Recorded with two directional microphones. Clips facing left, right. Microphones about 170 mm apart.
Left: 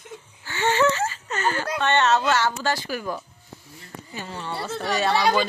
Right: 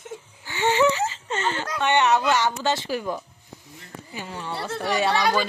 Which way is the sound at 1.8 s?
15° right (ahead or behind).